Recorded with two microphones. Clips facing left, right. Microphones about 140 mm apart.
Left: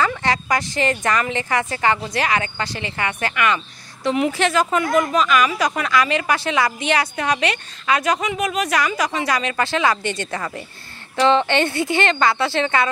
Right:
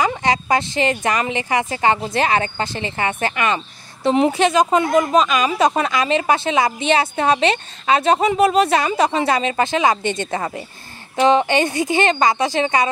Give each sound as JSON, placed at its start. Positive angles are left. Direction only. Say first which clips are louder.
{"t": 0.1, "sound": "a woman's voice", "louder": "right 3 dB", "side_deg": -20}